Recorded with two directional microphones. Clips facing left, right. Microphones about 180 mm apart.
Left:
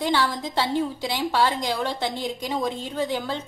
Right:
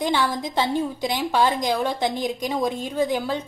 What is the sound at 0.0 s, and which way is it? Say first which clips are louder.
A woman's voice: right 1 dB; 15° right (ahead or behind).